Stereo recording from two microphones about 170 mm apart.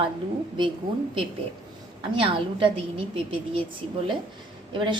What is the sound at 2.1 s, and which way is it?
Speech, 30° right (ahead or behind).